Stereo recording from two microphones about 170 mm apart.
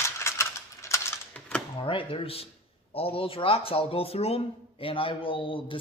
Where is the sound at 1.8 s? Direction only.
30° left (ahead or behind).